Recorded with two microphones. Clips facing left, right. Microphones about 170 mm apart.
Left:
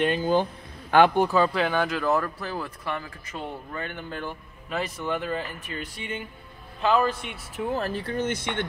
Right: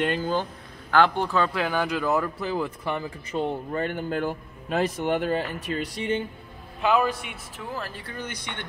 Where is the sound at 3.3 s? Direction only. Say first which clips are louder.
Right 7 dB; 35° right (ahead or behind).